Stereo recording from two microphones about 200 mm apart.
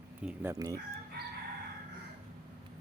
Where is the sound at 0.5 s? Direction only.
20° right (ahead or behind).